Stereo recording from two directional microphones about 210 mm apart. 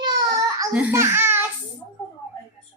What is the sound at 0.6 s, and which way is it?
Speech, 10° right (ahead or behind).